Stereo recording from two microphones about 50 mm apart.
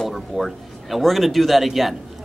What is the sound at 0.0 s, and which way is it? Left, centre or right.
Speech, centre.